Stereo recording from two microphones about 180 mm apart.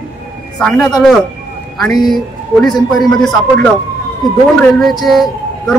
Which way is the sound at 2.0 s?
Centre (ahead or behind).